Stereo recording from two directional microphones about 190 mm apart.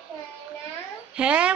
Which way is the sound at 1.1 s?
5° right (ahead or behind).